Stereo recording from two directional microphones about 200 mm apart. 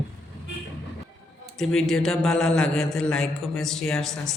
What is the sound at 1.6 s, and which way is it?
A man's voice, centre (ahead or behind).